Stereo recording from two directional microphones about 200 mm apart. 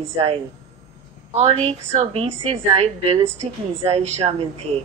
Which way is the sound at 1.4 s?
30° right (ahead or behind).